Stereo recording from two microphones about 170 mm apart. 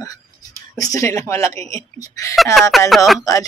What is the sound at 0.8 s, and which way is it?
Speech, 15° left (ahead or behind).